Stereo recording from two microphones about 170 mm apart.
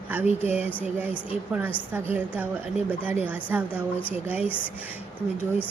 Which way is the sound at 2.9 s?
10° right (ahead or behind).